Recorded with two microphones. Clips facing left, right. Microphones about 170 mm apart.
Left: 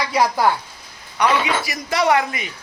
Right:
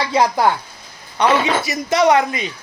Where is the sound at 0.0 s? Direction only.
20° right (ahead or behind).